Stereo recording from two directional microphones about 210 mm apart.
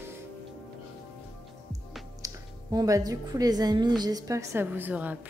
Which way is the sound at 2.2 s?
15° right (ahead or behind).